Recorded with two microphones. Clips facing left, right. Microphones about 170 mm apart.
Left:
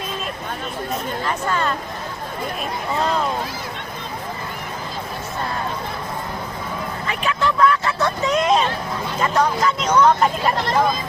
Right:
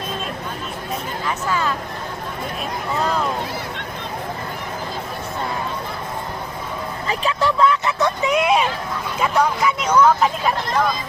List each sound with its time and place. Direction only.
1.3 s speech: 5° right (ahead or behind)
7.1 s speech: 35° right (ahead or behind)
7.6 s vehicle: 20° right (ahead or behind)
9.2 s speech: 10° right (ahead or behind)